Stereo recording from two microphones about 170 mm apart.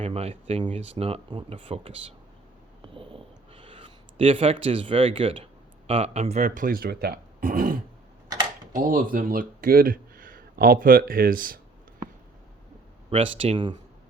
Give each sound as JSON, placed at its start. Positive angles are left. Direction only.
{"t": 0.0, "sound": "speech", "side_deg": -35}
{"t": 2.8, "sound": "a sound", "side_deg": -30}
{"t": 5.9, "sound": "speech", "side_deg": -35}
{"t": 8.9, "sound": "speech", "side_deg": -55}
{"t": 13.1, "sound": "speech", "side_deg": -35}